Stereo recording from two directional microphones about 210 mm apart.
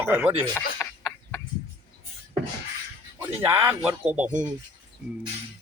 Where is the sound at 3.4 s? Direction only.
10° right (ahead or behind).